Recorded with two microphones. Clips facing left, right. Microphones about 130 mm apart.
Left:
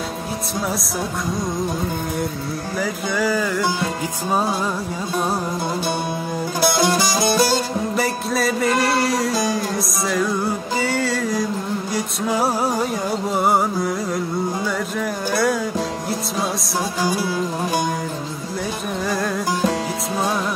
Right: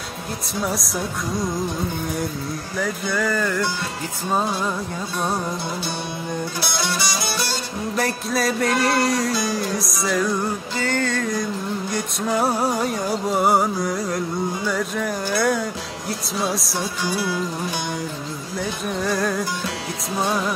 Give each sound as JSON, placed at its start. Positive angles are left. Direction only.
{"t": 2.8, "sound": "music", "side_deg": 5}
{"t": 6.6, "sound": "music", "side_deg": 45}
{"t": 7.9, "sound": "music", "side_deg": 0}
{"t": 15.0, "sound": "speech", "side_deg": 0}
{"t": 17.0, "sound": "music", "side_deg": 45}
{"t": 19.0, "sound": "music", "side_deg": 0}